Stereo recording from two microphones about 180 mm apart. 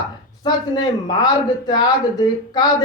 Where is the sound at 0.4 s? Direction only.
20° left (ahead or behind).